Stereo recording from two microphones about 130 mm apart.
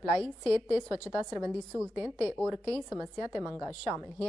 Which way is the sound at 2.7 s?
10° right (ahead or behind).